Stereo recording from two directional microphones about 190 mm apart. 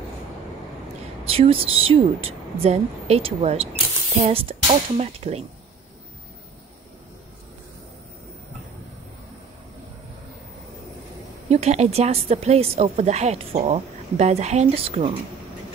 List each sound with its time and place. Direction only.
1.2 s a woman's voice: 30° right (ahead or behind)
11.4 s a woman's voice: 35° right (ahead or behind)